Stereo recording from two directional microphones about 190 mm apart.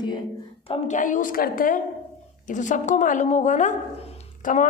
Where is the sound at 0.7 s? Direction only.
40° left (ahead or behind).